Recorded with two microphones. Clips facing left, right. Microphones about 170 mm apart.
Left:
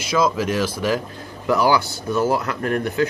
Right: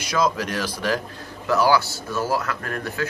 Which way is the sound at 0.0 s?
5° left (ahead or behind).